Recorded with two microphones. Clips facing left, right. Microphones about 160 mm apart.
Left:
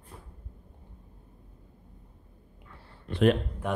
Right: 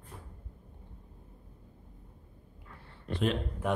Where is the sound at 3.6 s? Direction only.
Centre (ahead or behind).